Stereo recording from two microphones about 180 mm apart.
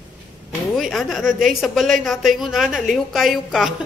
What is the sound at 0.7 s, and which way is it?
Speech, centre (ahead or behind).